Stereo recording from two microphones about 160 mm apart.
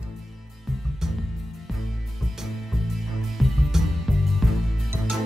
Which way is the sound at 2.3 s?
Centre (ahead or behind).